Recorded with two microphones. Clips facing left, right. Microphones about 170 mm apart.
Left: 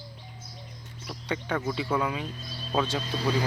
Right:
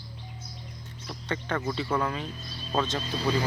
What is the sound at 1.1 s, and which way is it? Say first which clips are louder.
Speech: left 1 dB; 10° left (ahead or behind).